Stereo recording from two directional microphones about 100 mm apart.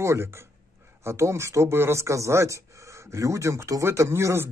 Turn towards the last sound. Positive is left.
turn(degrees=-25)  # may be behind; listen again after turning